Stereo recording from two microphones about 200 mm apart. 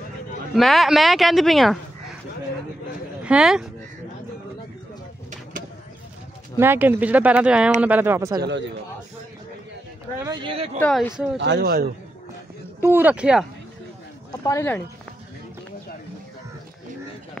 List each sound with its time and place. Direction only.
0.6 s speech: centre (ahead or behind)
3.2 s speech: 5° right (ahead or behind)
6.6 s speech: 10° right (ahead or behind)
8.4 s speech: 60° right (ahead or behind)
10.1 s speech: 20° right (ahead or behind)
10.8 s speech: 5° left (ahead or behind)
11.3 s speech: 60° right (ahead or behind)
12.8 s speech: 10° right (ahead or behind)
14.4 s speech: 15° left (ahead or behind)